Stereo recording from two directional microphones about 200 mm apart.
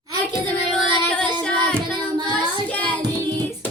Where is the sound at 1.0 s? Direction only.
5° left (ahead or behind).